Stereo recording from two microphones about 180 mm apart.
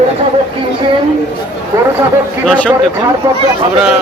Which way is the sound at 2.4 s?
5° left (ahead or behind).